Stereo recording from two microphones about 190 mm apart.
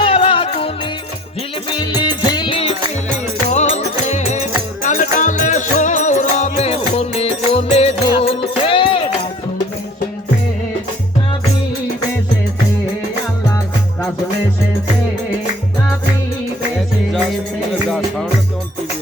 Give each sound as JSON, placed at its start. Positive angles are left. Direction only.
{"t": 0.0, "sound": "music", "side_deg": 30}
{"t": 1.8, "sound": "music", "side_deg": 20}
{"t": 17.8, "sound": "music", "side_deg": 0}